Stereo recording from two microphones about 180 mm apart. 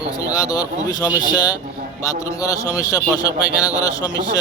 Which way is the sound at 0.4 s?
20° left (ahead or behind).